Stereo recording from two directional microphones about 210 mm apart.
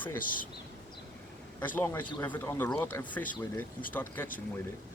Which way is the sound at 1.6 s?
10° left (ahead or behind).